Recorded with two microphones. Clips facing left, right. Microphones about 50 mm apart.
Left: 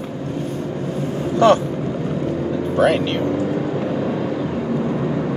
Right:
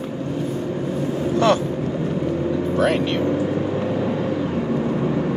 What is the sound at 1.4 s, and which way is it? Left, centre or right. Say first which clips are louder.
Speech: left 5 dB; left.